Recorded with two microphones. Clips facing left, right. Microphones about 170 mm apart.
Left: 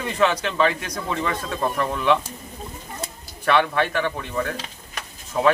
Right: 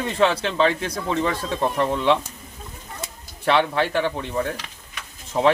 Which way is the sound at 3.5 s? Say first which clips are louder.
Even; 25° right (ahead or behind).